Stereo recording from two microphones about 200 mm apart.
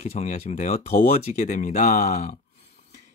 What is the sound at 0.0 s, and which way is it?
Speech, 35° left (ahead or behind).